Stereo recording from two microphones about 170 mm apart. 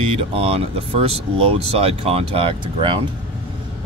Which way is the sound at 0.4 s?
35° right (ahead or behind).